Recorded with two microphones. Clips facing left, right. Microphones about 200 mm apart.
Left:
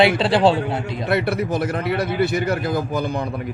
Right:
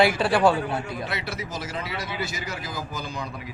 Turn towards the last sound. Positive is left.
turn(degrees=55)  # may be behind; listen again after turning